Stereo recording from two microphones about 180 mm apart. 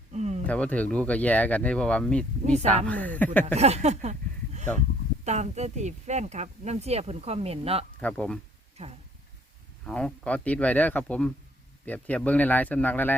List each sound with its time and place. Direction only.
0.1 s a sound: 40° right (ahead or behind)
0.4 s speech: 5° left (ahead or behind)
3.4 s speech: 35° right (ahead or behind)
8.0 s speech: 5° left (ahead or behind)
8.8 s speech: 40° right (ahead or behind)
9.8 s speech: 5° left (ahead or behind)